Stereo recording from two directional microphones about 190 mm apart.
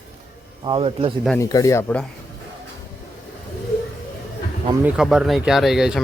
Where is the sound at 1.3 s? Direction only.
15° left (ahead or behind).